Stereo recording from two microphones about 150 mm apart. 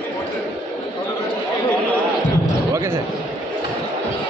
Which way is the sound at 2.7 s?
20° right (ahead or behind).